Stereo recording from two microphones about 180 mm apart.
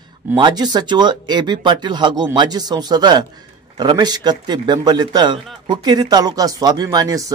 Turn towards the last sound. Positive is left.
turn(degrees=-20)  # may be behind; listen again after turning